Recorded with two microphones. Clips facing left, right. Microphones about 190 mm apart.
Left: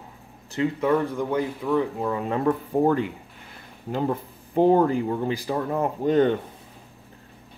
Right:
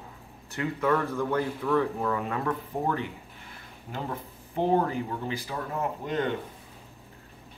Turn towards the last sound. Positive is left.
turn(degrees=35)  # may be behind; listen again after turning